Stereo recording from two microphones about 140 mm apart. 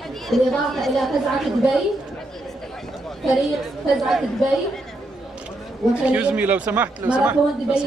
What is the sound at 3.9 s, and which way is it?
Speech, centre (ahead or behind).